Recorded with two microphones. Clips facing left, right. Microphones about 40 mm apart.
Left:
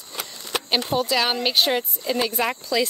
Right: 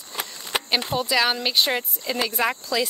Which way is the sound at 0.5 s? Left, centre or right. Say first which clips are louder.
Right 1 dB; right.